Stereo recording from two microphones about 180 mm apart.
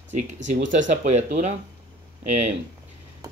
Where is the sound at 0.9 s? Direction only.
40° right (ahead or behind).